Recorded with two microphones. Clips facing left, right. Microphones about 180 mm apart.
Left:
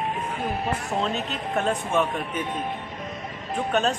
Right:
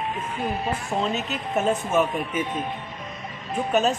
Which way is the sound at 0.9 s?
Centre (ahead or behind).